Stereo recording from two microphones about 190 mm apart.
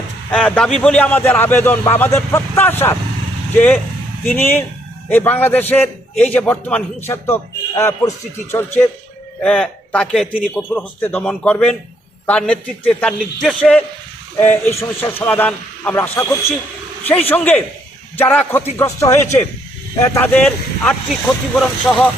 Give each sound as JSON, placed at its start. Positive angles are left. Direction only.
{"t": 0.3, "sound": "a man's voice", "side_deg": 5}
{"t": 10.6, "sound": "a man's voice", "side_deg": 10}